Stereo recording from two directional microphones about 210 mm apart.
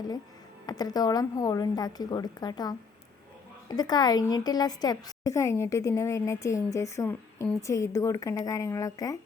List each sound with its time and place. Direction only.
0.6 s a woman's voice: 20° left (ahead or behind)